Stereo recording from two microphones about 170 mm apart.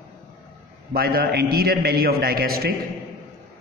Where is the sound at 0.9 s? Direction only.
65° right (ahead or behind).